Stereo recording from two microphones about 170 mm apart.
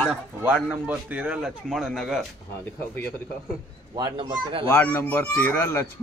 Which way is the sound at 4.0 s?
25° right (ahead or behind).